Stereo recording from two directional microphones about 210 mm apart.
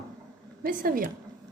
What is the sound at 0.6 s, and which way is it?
Speech, 40° right (ahead or behind).